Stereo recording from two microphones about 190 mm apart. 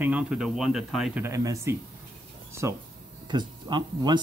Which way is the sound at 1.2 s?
15° right (ahead or behind).